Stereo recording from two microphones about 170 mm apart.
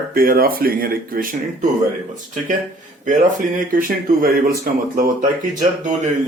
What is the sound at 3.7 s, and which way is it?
Speech, 55° right (ahead or behind).